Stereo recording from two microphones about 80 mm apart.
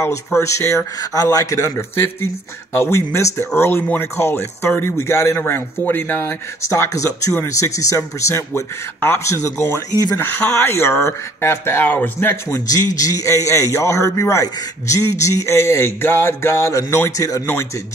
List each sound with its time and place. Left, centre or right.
0.1 s a man's voice: left
6.6 s a man's voice: left
12.4 s a man's voice: left